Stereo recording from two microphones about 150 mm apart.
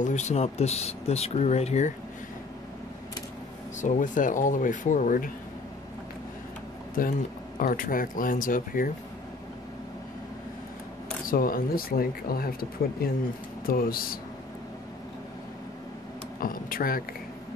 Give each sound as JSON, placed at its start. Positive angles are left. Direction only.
{"t": 0.0, "sound": "speech", "side_deg": 50}
{"t": 3.8, "sound": "speech", "side_deg": 60}
{"t": 7.0, "sound": "speech", "side_deg": 65}
{"t": 11.2, "sound": "speech", "side_deg": 70}
{"t": 16.3, "sound": "speech", "side_deg": 70}